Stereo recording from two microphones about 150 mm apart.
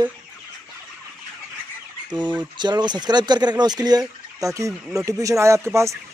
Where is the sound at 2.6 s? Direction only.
30° right (ahead or behind).